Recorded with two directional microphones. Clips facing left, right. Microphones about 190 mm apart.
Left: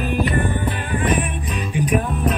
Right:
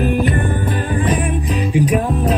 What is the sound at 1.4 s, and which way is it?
Music, 30° right (ahead or behind).